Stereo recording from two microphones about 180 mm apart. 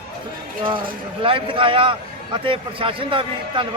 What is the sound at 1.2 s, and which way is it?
A man's voice, 30° right (ahead or behind).